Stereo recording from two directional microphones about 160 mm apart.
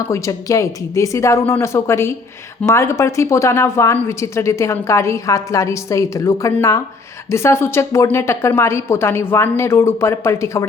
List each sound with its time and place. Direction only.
0.1 s speech: 20° left (ahead or behind)